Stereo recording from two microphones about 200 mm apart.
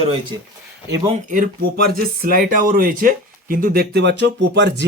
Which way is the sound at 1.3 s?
45° right (ahead or behind).